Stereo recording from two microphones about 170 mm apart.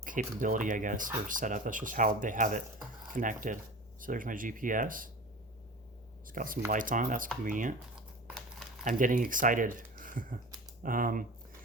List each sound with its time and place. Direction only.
0.0 s speech: 50° right (ahead or behind)
6.2 s speech: 55° right (ahead or behind)
7.9 s crumpling: centre (ahead or behind)
8.8 s speech: 50° right (ahead or behind)